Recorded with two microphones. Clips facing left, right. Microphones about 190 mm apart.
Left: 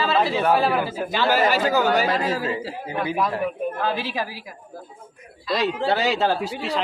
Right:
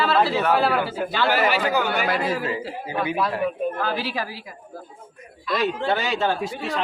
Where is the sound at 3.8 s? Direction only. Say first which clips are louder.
Left 1 dB; 20° left (ahead or behind).